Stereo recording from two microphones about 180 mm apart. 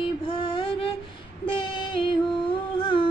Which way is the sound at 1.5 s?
25° left (ahead or behind).